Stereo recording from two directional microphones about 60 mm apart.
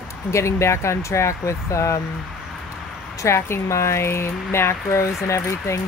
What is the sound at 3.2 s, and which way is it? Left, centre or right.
Speech, left.